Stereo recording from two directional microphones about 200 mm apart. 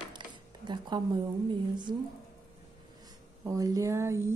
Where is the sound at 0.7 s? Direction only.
20° right (ahead or behind).